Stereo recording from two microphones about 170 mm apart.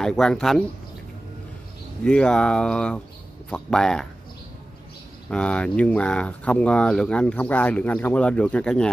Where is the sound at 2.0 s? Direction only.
5° left (ahead or behind).